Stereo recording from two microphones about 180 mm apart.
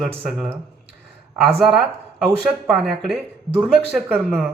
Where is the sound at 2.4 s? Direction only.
Centre (ahead or behind).